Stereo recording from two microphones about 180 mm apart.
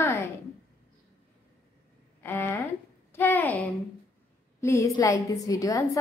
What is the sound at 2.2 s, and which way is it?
A woman's voice, 15° left (ahead or behind).